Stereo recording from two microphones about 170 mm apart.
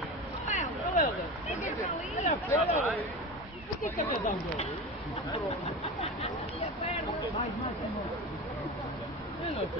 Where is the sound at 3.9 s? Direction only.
50° left (ahead or behind).